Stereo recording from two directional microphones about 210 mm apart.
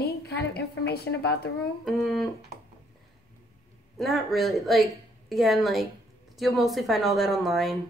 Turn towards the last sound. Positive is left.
turn(degrees=0)  # may be behind; listen again after turning